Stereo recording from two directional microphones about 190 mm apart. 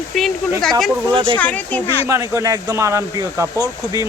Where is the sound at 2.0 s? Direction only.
15° right (ahead or behind).